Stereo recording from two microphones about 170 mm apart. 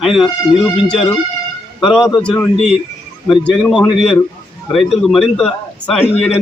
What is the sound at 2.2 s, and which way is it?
A man's voice, 5° left (ahead or behind).